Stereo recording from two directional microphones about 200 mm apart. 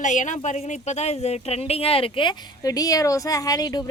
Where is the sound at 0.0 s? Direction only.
40° left (ahead or behind).